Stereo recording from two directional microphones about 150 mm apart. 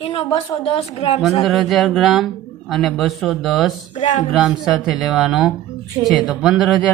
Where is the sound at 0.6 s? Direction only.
40° left (ahead or behind).